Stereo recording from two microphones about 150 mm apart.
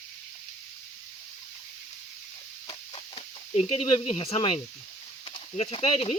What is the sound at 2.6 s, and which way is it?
Chicken, 35° left (ahead or behind).